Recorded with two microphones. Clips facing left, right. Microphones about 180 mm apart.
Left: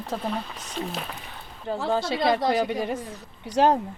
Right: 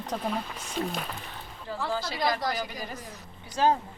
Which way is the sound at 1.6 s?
25° left (ahead or behind).